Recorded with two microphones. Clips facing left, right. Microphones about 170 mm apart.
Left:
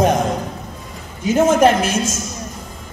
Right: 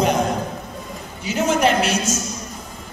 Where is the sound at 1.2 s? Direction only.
50° left (ahead or behind).